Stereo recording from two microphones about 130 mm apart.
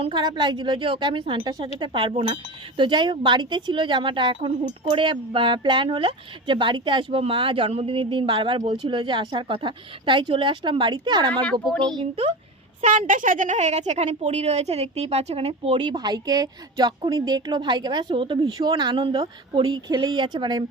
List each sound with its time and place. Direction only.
0.0 s speech: 35° right (ahead or behind)
12.8 s a woman's voice: 80° right; by 15.8 s 50° right (ahead or behind)
15.8 s speech: 35° right (ahead or behind)